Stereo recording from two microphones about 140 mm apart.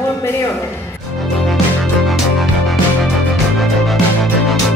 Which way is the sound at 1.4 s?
Centre (ahead or behind).